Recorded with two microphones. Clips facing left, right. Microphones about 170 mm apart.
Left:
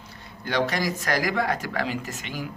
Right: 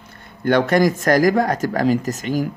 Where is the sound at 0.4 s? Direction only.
55° right (ahead or behind).